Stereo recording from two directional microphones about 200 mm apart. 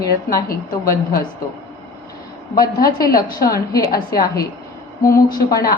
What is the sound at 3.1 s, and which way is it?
Speech, 50° left (ahead or behind).